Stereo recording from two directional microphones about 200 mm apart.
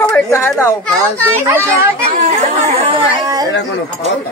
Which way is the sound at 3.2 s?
15° right (ahead or behind).